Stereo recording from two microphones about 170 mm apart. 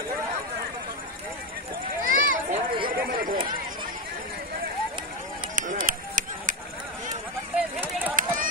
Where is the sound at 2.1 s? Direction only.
50° right (ahead or behind).